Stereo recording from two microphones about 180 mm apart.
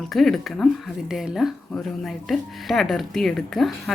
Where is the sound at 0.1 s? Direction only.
Centre (ahead or behind).